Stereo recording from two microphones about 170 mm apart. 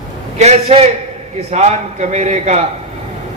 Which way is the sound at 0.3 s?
40° right (ahead or behind).